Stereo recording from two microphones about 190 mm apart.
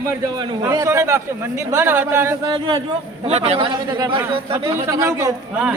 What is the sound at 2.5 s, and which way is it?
A man's voice, 25° right (ahead or behind).